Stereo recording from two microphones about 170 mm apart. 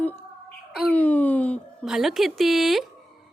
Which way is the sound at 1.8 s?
Centre (ahead or behind).